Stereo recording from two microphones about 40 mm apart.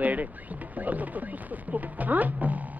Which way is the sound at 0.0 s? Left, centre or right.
Right.